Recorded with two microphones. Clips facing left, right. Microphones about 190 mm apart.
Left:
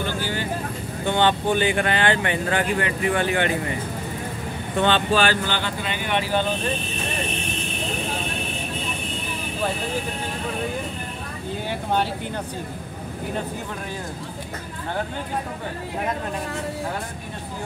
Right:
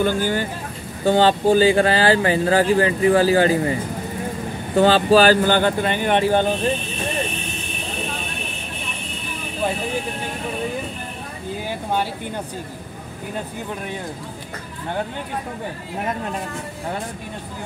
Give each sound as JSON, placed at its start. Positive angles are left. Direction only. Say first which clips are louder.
{"t": 0.0, "sound": "vehicle", "louder": "right 7 dB", "side_deg": -45}
{"t": 1.0, "sound": "speech", "louder": "right 5 dB", "side_deg": -35}
{"t": 4.7, "sound": "speech", "louder": "right 6 dB", "side_deg": -35}